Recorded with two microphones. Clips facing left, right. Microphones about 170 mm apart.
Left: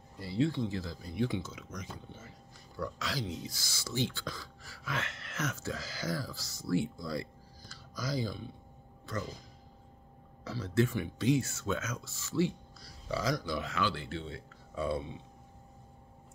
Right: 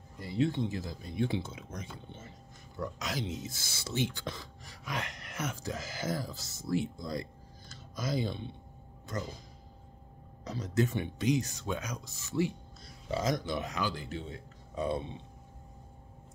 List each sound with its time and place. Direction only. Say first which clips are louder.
0.2 s speech: even; 20° right (ahead or behind)
10.4 s speech: left 1 dB; 20° right (ahead or behind)